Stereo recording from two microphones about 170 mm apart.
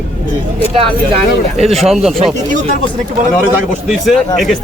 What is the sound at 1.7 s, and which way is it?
Speech, centre (ahead or behind).